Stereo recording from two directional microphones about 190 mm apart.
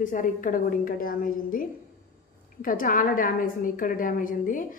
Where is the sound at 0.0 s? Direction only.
45° left (ahead or behind).